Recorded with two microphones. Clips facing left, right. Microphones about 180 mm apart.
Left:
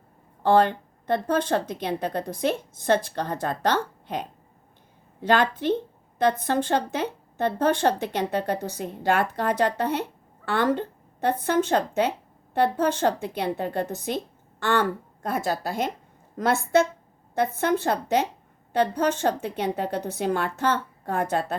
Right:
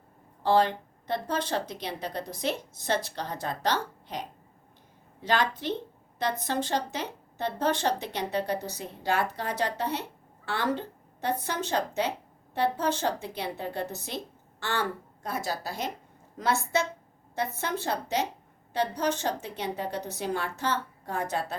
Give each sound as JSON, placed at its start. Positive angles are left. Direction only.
{"t": 0.4, "sound": "speech", "side_deg": 55}